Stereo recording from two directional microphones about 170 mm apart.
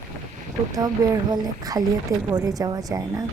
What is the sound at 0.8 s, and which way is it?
A woman's voice, 20° right (ahead or behind).